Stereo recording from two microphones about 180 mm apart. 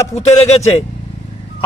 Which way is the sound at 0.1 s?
40° left (ahead or behind).